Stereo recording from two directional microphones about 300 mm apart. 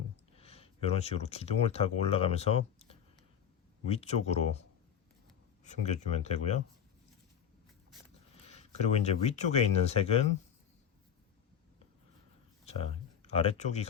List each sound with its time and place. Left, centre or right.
0.3 s speech: centre
5.6 s speech: left
8.4 s speech: left
13.2 s speech: centre